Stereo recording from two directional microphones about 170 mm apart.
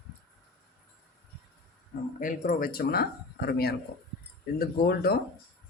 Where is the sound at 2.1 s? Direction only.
55° left (ahead or behind).